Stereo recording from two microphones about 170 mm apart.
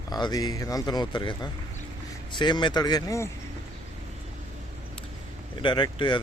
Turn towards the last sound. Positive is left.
turn(degrees=25)  # may be behind; listen again after turning